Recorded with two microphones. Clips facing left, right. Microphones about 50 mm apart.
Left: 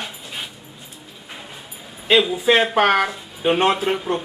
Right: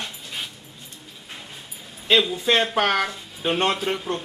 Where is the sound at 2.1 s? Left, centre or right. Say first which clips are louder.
Left 4 dB; centre.